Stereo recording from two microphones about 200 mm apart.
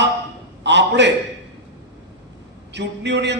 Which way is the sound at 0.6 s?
60° right (ahead or behind).